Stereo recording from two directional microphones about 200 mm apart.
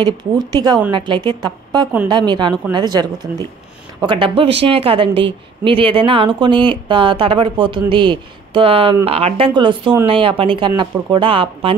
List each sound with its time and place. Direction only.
0.0 s speech: 20° right (ahead or behind)